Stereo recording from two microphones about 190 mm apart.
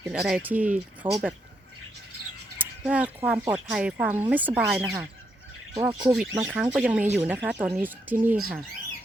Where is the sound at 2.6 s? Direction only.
10° right (ahead or behind).